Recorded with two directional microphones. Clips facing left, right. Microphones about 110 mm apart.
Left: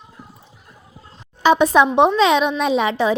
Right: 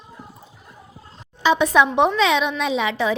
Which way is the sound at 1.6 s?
35° left (ahead or behind).